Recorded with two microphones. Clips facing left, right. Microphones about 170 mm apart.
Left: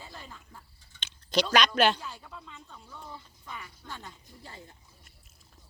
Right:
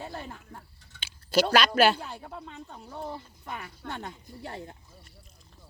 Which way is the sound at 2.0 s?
55° right (ahead or behind).